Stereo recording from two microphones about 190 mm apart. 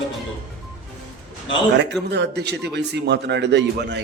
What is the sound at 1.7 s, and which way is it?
Speech, 65° right (ahead or behind).